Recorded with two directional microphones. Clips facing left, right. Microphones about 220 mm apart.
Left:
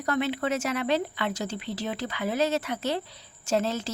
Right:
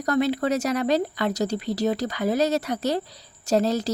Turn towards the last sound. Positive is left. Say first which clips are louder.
# right 5 dB
turn(degrees=-40)  # may be behind; listen again after turning